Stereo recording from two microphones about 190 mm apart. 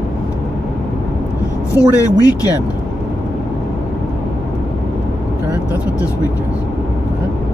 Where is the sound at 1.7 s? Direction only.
20° left (ahead or behind).